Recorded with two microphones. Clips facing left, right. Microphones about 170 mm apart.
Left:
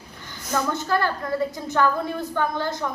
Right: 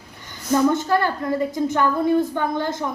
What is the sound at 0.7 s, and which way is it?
A woman's voice, 15° right (ahead or behind).